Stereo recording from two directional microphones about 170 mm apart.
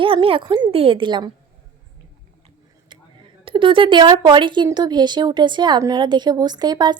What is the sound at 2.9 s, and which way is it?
Speech, 30° right (ahead or behind).